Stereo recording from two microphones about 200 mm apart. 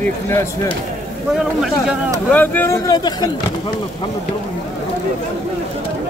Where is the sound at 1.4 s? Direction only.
5° right (ahead or behind).